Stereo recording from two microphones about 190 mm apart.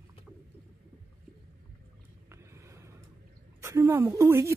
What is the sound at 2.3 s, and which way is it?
Vehicle, 15° right (ahead or behind).